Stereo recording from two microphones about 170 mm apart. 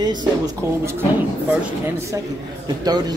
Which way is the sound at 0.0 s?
25° right (ahead or behind).